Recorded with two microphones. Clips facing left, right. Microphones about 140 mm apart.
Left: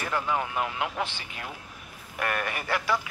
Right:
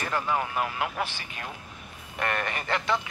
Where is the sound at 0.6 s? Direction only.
15° left (ahead or behind).